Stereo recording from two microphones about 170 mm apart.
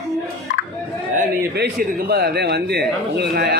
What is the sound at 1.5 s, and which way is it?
A man's voice, 65° right (ahead or behind).